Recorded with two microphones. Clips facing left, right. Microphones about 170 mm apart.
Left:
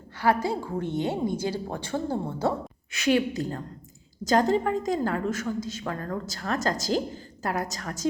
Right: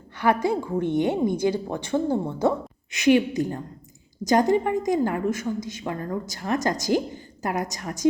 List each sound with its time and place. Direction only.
0.2 s a woman's voice: 20° right (ahead or behind)